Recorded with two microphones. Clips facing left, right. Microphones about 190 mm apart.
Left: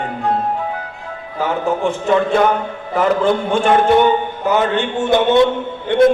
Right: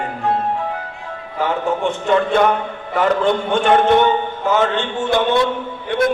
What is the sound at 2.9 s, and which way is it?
A man's voice, 5° left (ahead or behind).